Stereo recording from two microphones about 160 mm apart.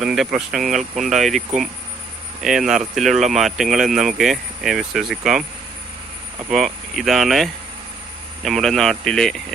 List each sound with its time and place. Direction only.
0.0 s speech: 5° right (ahead or behind)
6.5 s speech: centre (ahead or behind)